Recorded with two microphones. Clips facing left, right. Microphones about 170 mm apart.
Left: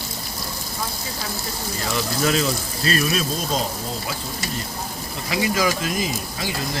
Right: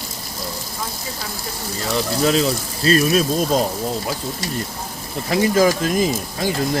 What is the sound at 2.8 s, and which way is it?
Speech, 40° right (ahead or behind).